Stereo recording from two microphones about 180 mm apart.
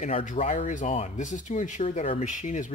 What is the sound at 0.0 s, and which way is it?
Speech, 45° left (ahead or behind).